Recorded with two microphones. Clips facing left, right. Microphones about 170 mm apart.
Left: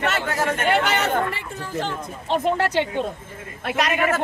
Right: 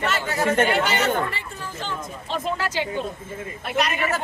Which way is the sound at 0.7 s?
60° left (ahead or behind).